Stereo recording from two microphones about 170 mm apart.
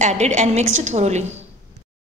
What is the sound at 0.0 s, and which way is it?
A woman's voice, 45° right (ahead or behind).